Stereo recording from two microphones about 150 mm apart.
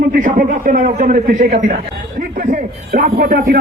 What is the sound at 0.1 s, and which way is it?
A man's voice, 65° right (ahead or behind).